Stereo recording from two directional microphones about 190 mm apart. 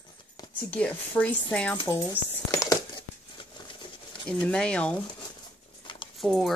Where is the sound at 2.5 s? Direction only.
15° left (ahead or behind).